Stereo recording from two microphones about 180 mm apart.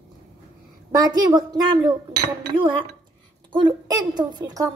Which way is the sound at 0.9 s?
20° right (ahead or behind).